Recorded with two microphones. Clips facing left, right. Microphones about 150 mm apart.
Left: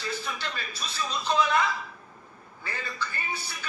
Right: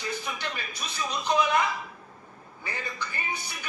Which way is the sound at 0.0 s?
15° right (ahead or behind).